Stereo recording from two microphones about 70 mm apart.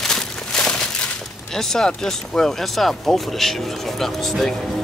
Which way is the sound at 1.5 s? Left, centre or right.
Centre.